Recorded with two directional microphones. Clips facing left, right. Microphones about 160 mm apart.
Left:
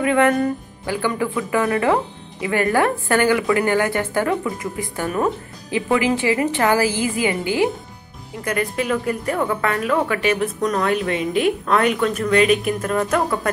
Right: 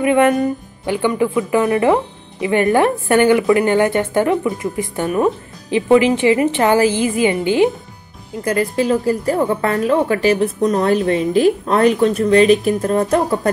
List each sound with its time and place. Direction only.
0.0 s a woman's voice: 20° right (ahead or behind)
8.5 s speech: 30° right (ahead or behind)